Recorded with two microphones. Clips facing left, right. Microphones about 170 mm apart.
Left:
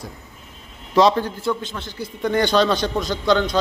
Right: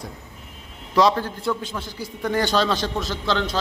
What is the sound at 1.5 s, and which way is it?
A man's voice, 5° right (ahead or behind).